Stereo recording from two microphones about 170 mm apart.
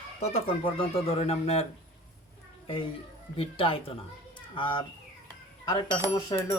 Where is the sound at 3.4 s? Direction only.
30° left (ahead or behind).